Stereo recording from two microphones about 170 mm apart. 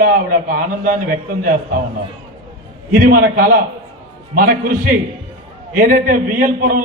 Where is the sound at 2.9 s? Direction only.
60° right (ahead or behind).